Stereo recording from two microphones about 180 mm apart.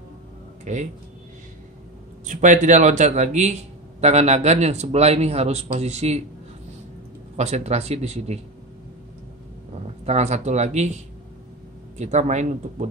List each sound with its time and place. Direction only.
0.7 s a man's voice: 40° right (ahead or behind)
2.2 s a man's voice: 45° right (ahead or behind)
7.3 s a man's voice: 35° right (ahead or behind)
10.0 s a man's voice: 40° right (ahead or behind)
12.0 s a man's voice: 40° right (ahead or behind)